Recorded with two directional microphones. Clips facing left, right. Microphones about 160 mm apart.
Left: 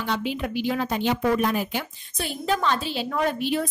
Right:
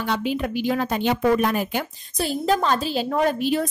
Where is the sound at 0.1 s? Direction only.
45° right (ahead or behind).